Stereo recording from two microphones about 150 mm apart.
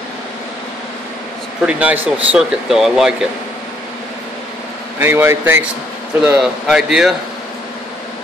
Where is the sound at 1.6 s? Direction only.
10° right (ahead or behind).